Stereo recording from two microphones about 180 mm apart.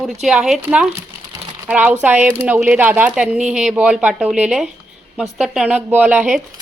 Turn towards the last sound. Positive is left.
turn(degrees=-5)  # may be behind; listen again after turning